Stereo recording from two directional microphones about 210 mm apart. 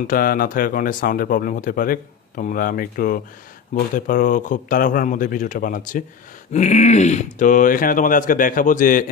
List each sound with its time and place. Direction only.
0.0 s speech: 40° left (ahead or behind)